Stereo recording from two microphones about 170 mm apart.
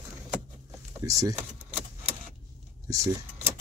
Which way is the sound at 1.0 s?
20° right (ahead or behind).